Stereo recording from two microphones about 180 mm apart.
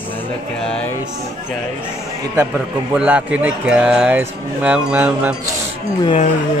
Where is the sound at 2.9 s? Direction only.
5° right (ahead or behind).